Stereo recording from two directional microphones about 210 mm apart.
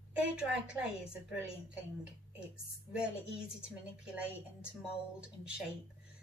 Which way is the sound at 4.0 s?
5° right (ahead or behind).